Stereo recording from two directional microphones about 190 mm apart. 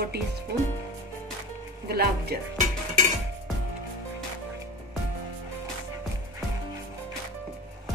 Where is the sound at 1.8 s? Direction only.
55° right (ahead or behind).